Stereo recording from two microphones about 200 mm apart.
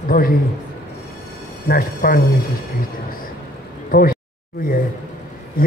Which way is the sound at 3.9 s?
45° left (ahead or behind).